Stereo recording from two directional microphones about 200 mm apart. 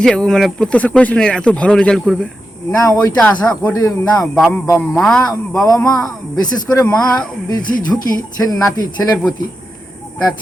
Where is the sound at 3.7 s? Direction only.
15° left (ahead or behind).